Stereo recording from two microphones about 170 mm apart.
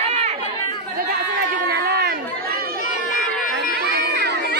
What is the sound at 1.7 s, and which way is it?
Chatter, 70° right (ahead or behind).